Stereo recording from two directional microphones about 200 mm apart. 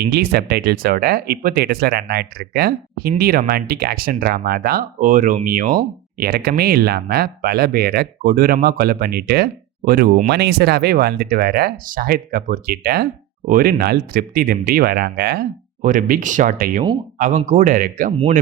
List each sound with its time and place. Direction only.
0.0 s speech: 50° right (ahead or behind)